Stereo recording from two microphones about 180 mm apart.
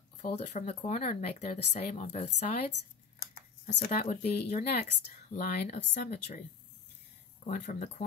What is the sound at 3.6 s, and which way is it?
Speech, 40° left (ahead or behind).